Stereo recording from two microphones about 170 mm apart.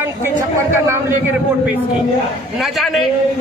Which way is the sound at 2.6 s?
Centre (ahead or behind).